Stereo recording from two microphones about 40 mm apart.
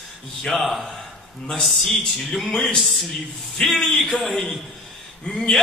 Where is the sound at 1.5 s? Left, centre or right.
Centre.